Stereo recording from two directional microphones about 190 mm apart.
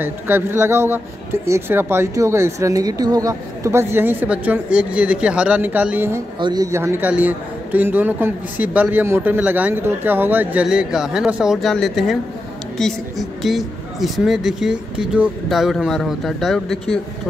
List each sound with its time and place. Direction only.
0.0 s speech: 10° right (ahead or behind)